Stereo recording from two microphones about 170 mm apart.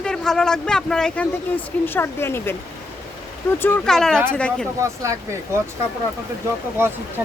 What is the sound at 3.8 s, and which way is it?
Speech, 5° left (ahead or behind).